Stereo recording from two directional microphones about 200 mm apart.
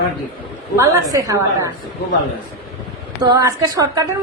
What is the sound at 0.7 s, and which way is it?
Speech, 15° right (ahead or behind).